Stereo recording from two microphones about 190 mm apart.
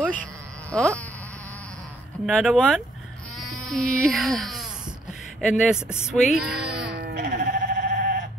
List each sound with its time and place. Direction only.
0.0 s sheep: 5° left (ahead or behind)
2.2 s speech: centre (ahead or behind)
5.8 s speech: 15° left (ahead or behind)
6.3 s speech: 5° right (ahead or behind)
6.8 s sheep: 60° right (ahead or behind)
7.2 s sheep: 40° right (ahead or behind)